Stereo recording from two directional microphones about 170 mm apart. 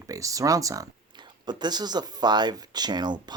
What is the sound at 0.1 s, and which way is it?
Speech, 20° right (ahead or behind).